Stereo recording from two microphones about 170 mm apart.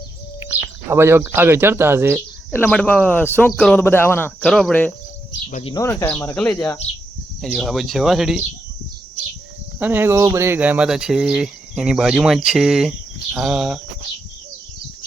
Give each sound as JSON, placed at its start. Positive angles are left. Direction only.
{"t": 0.3, "sound": "speech", "side_deg": -15}
{"t": 2.6, "sound": "speech", "side_deg": 5}
{"t": 3.8, "sound": "speech", "side_deg": 15}
{"t": 4.4, "sound": "speech", "side_deg": 0}
{"t": 5.7, "sound": "speech", "side_deg": 15}
{"t": 7.4, "sound": "speech", "side_deg": 0}
{"t": 9.7, "sound": "speech", "side_deg": -10}